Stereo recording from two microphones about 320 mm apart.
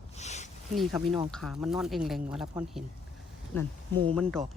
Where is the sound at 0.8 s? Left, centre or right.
Centre.